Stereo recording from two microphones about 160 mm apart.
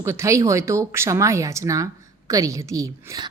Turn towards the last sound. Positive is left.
turn(degrees=-20)  # may be behind; listen again after turning